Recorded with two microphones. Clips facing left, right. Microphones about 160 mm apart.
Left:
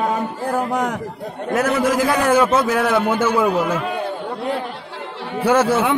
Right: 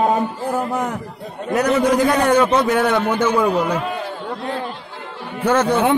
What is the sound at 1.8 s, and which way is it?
A man's voice, centre (ahead or behind).